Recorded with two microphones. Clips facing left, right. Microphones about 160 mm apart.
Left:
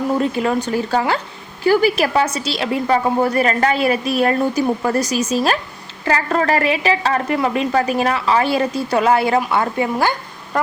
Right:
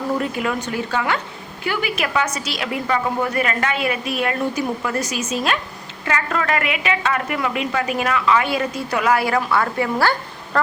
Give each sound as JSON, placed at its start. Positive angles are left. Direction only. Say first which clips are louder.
{"t": 0.2, "sound": "a woman's voice", "louder": "left 5 dB", "side_deg": 30}